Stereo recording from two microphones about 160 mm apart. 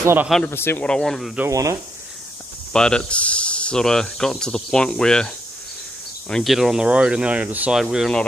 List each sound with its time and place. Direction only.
0.0 s speech: 15° right (ahead or behind)
0.5 s speech: 15° left (ahead or behind)
1.5 s speech: 20° right (ahead or behind)
2.7 s speech: 5° left (ahead or behind)